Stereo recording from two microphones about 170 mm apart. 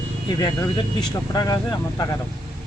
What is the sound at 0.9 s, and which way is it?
Speech, 20° left (ahead or behind).